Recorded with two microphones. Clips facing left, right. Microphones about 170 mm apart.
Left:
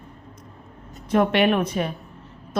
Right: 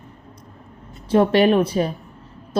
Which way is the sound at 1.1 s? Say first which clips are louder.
Right 4 dB; 35° right (ahead or behind).